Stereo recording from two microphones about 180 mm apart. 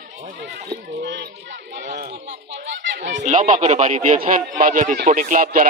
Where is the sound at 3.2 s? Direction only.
45° right (ahead or behind).